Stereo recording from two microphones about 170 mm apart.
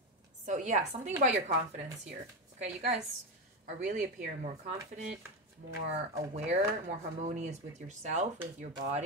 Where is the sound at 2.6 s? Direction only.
45° right (ahead or behind).